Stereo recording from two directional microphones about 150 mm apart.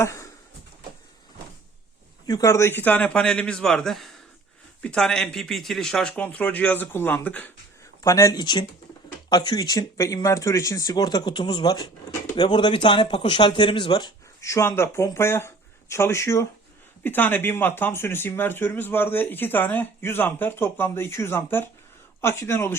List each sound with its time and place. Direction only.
0.0 s speech: 20° left (ahead or behind)
2.2 s speech: 25° left (ahead or behind)
8.0 s speech: 20° left (ahead or behind)